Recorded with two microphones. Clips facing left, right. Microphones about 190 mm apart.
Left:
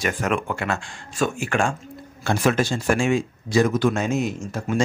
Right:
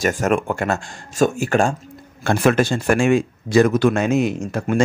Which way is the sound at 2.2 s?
60° right (ahead or behind).